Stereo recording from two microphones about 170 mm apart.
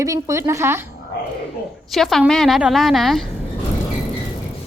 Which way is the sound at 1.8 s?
Centre (ahead or behind).